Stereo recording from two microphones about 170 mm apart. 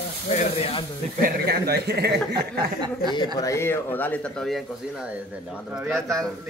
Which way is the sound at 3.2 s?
20° left (ahead or behind).